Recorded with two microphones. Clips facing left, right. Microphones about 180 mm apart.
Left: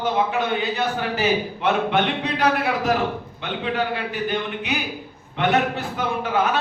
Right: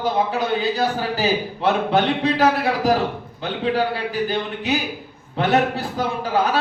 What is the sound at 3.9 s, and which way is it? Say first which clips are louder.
A man's voice: right 2 dB; 35° right (ahead or behind).